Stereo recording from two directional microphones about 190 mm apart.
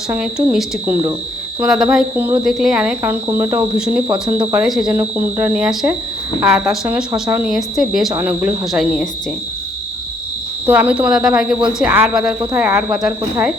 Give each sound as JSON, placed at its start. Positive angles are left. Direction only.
{"t": 0.1, "sound": "speech", "side_deg": -5}
{"t": 1.6, "sound": "speech", "side_deg": -20}
{"t": 1.9, "sound": "speech", "side_deg": -5}
{"t": 4.1, "sound": "speech", "side_deg": -15}
{"t": 7.4, "sound": "speech", "side_deg": 0}
{"t": 10.7, "sound": "speech", "side_deg": -10}
{"t": 12.3, "sound": "speech", "side_deg": -15}